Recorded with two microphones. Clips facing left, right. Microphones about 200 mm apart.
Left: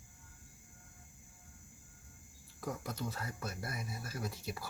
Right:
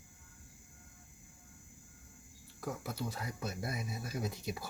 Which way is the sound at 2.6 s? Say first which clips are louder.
Right 1 dB; centre (ahead or behind).